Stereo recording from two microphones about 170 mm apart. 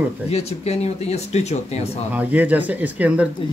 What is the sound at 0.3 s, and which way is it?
Speech, 40° left (ahead or behind).